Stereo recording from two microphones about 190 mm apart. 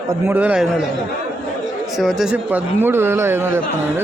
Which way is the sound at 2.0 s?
Centre (ahead or behind).